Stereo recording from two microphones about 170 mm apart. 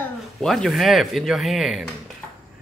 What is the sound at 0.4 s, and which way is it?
Speech, centre (ahead or behind).